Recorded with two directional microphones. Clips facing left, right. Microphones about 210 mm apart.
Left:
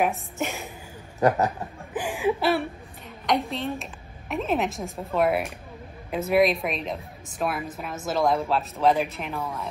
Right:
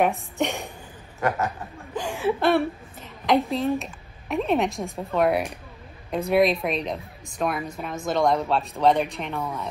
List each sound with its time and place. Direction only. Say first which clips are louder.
0.0 s a woman's voice: right 3 dB; centre (ahead or behind)
1.2 s a man's voice: left 4 dB; 35° left (ahead or behind)
2.0 s whimper: even; 15° left (ahead or behind)
3.3 s a woman's voice: right 4 dB; centre (ahead or behind)